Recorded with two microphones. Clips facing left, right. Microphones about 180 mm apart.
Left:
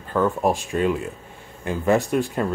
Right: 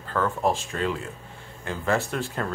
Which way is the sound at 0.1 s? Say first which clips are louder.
Left 4 dB; 15° left (ahead or behind).